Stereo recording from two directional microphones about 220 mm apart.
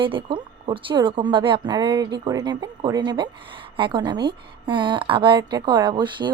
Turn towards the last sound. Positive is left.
turn(degrees=-20)  # may be behind; listen again after turning